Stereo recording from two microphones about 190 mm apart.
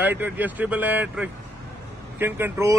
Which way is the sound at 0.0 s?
10° right (ahead or behind).